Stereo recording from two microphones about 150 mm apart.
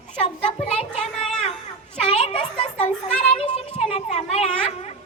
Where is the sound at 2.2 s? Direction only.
40° left (ahead or behind).